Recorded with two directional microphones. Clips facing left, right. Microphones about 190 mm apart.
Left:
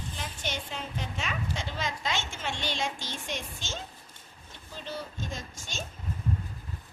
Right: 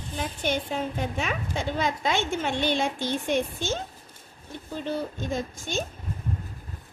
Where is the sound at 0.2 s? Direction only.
55° right (ahead or behind).